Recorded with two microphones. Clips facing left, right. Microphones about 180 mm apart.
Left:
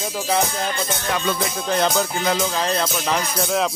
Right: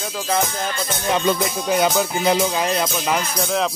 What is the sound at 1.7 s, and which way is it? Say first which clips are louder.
Speech: right 2 dB; 5° right (ahead or behind).